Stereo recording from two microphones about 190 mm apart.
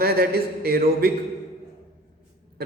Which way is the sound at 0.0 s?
55° right (ahead or behind).